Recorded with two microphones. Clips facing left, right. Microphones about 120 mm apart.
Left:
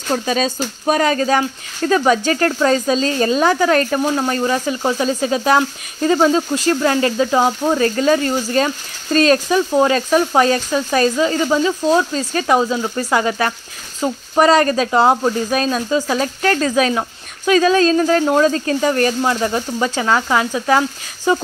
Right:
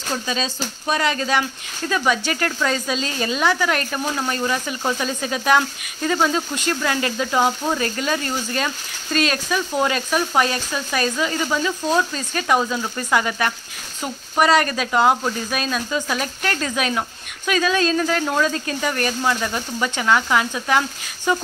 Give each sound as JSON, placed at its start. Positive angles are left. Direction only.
{"t": 0.1, "sound": "speech", "side_deg": 45}
{"t": 12.2, "sound": "speech", "side_deg": 35}
{"t": 12.4, "sound": "speech", "side_deg": 25}